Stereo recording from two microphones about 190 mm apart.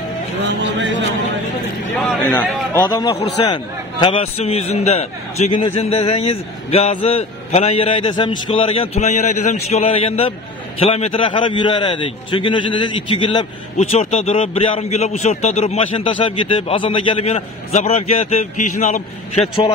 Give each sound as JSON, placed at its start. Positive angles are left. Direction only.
{"t": 0.4, "sound": "speech", "side_deg": -70}
{"t": 2.7, "sound": "a man's voice", "side_deg": 20}